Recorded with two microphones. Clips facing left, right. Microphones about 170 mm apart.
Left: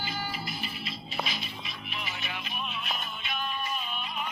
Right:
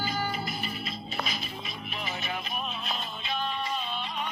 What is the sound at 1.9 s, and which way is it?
Music, 35° right (ahead or behind).